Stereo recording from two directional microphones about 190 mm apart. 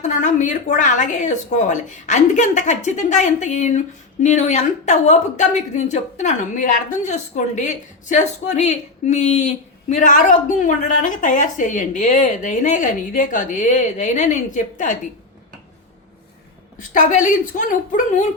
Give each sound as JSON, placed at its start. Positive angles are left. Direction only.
{"t": 0.0, "sound": "speech", "side_deg": 40}
{"t": 16.7, "sound": "a woman's voice", "side_deg": 40}